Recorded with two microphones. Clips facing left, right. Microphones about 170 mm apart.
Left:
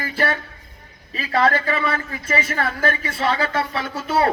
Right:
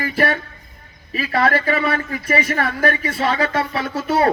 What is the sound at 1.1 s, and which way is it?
Speech, 25° left (ahead or behind).